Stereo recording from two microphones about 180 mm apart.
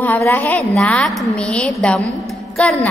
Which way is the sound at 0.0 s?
15° left (ahead or behind).